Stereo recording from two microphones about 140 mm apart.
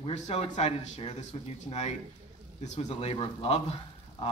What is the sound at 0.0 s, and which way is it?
Speech, 50° left (ahead or behind).